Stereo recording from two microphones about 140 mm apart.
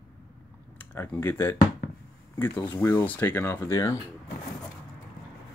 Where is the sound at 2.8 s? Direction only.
15° left (ahead or behind).